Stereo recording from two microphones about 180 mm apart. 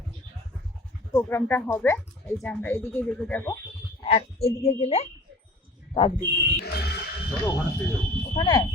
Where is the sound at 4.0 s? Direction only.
35° left (ahead or behind).